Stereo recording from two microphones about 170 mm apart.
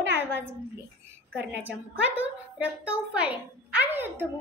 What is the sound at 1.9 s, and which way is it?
A child's voice, 10° right (ahead or behind).